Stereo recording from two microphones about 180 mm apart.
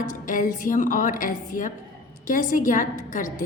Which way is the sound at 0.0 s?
45° left (ahead or behind).